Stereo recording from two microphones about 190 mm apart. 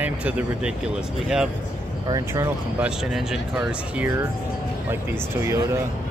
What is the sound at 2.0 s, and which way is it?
Speech, 15° right (ahead or behind).